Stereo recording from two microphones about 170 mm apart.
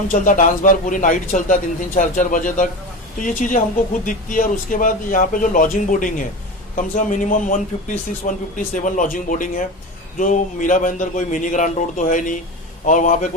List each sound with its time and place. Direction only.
0.1 s a man's voice: 50° left (ahead or behind)